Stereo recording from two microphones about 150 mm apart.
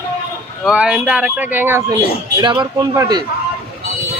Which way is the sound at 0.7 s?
5° right (ahead or behind).